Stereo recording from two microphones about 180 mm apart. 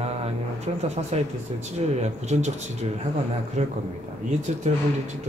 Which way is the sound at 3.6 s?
40° right (ahead or behind).